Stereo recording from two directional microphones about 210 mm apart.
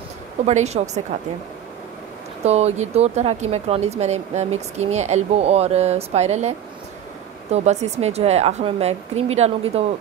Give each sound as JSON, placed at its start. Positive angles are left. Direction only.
{"t": 0.5, "sound": "speech", "side_deg": -30}
{"t": 2.4, "sound": "speech", "side_deg": -30}
{"t": 7.5, "sound": "speech", "side_deg": -30}